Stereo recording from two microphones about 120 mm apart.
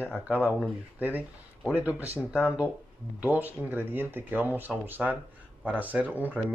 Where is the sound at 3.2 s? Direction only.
15° right (ahead or behind).